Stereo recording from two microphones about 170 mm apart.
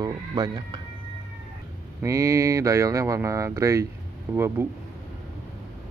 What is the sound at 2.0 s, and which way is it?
Speech, 15° right (ahead or behind).